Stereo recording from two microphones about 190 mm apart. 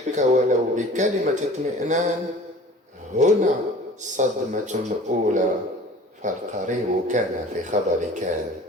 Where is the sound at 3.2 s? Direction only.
40° right (ahead or behind).